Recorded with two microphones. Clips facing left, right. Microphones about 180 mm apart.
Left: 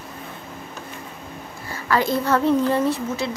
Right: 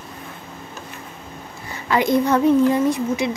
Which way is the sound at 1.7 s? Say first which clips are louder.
Right 3 dB; 20° right (ahead or behind).